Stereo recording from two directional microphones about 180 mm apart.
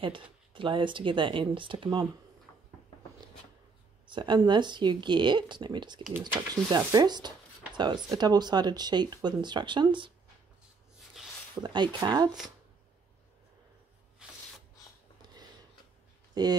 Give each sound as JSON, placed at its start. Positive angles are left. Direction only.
{"t": 0.0, "sound": "speech", "side_deg": -30}
{"t": 4.1, "sound": "speech", "side_deg": -25}
{"t": 11.6, "sound": "speech", "side_deg": -25}
{"t": 15.2, "sound": "a sound", "side_deg": -25}
{"t": 16.4, "sound": "speech", "side_deg": -20}